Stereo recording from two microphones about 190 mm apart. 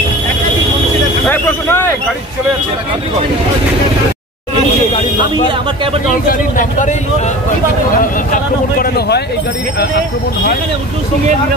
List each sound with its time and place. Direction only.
1.2 s vehicle: 10° left (ahead or behind)
6.2 s speech: 45° left (ahead or behind)
8.0 s speech: 50° left (ahead or behind)